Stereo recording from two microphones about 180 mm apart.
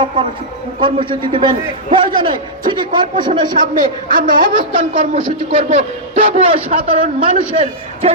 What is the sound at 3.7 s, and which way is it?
Speech, 50° right (ahead or behind).